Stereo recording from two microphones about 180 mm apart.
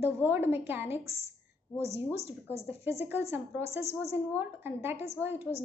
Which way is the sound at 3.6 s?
35° left (ahead or behind).